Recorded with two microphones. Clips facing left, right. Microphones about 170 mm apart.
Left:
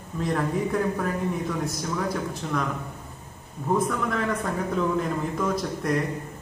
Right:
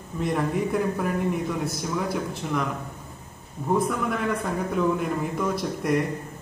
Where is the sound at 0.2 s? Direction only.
5° right (ahead or behind).